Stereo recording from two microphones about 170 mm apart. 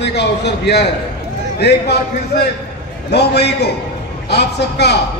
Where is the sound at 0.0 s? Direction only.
85° left.